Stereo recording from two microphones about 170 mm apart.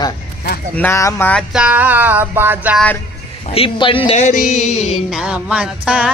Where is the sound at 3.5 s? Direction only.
35° left (ahead or behind).